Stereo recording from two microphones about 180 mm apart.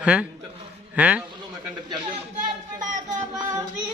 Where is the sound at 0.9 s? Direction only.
5° right (ahead or behind).